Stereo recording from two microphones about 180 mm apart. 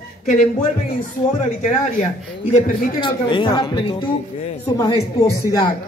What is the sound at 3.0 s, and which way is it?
A woman's voice, 30° left (ahead or behind).